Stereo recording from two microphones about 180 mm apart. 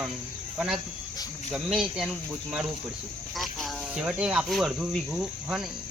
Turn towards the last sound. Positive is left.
turn(degrees=0)  # may be behind; listen again after turning